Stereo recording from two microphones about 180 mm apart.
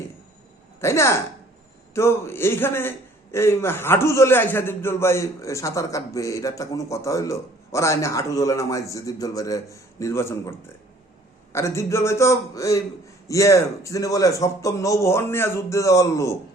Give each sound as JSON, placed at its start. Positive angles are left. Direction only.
{"t": 0.8, "sound": "a man's voice", "side_deg": 15}
{"t": 11.5, "sound": "a man's voice", "side_deg": 15}